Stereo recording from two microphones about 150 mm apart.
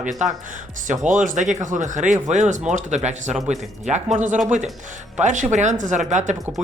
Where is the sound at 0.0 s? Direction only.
55° right (ahead or behind).